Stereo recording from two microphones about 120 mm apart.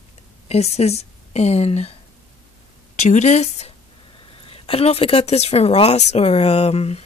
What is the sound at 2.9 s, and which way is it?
Speech, 80° left.